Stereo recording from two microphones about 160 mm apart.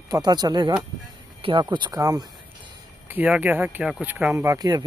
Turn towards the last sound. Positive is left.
turn(degrees=-25)  # may be behind; listen again after turning